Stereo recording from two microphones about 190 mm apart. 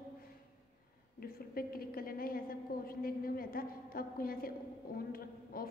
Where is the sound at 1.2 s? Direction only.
50° left (ahead or behind).